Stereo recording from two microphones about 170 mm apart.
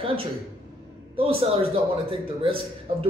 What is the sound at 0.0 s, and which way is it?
A man's voice, 30° right (ahead or behind).